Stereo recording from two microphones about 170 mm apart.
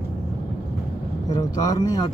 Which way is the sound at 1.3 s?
25° left (ahead or behind).